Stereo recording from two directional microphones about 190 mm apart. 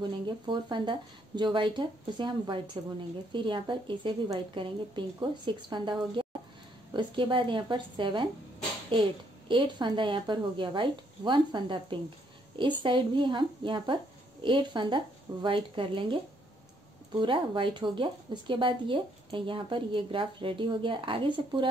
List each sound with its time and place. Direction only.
0.5 s speech: 25° right (ahead or behind)